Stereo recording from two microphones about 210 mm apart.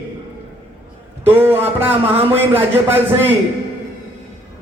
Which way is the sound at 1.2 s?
10° right (ahead or behind).